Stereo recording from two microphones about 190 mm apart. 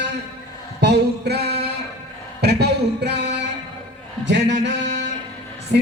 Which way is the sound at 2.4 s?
60° right (ahead or behind).